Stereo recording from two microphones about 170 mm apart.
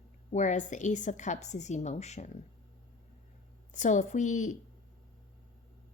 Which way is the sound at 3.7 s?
45° left (ahead or behind).